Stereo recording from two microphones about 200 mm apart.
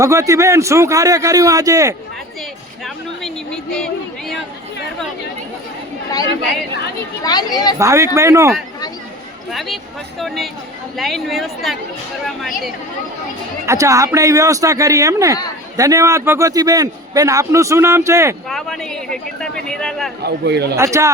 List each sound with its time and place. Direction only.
0.0 s a man's voice: 15° right (ahead or behind)
2.8 s speech: centre (ahead or behind)
7.3 s speech: 20° left (ahead or behind)
7.8 s a man's voice: 15° right (ahead or behind)
9.5 s speech: centre (ahead or behind)
13.7 s a man's voice: 15° right (ahead or behind)
18.4 s speech: centre (ahead or behind)
20.2 s a man's voice: 55° right (ahead or behind)
20.7 s a man's voice: 15° right (ahead or behind)